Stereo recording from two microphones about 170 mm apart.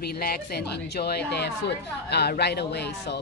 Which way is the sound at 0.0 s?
65° left (ahead or behind).